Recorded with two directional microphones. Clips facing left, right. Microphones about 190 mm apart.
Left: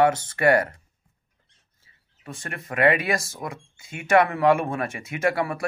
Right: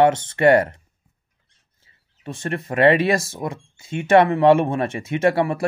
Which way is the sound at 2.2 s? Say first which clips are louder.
Right 9 dB; 25° right (ahead or behind).